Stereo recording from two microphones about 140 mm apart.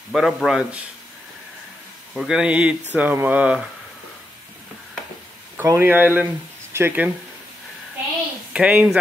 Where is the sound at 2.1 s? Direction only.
5° right (ahead or behind).